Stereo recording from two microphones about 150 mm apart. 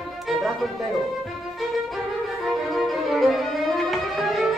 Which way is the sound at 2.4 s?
Centre (ahead or behind).